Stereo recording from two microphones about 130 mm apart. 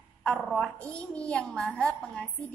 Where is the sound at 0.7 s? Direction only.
10° left (ahead or behind).